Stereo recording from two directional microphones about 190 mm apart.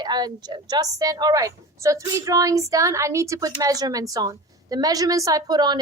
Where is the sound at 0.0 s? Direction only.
20° right (ahead or behind).